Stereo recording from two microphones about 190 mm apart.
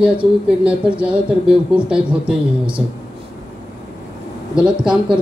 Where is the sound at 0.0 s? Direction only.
5° right (ahead or behind).